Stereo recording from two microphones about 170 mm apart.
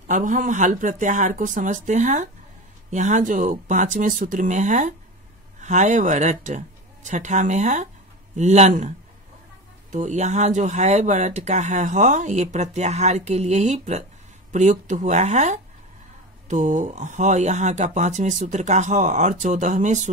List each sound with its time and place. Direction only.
0.0 s speech: 45° right (ahead or behind)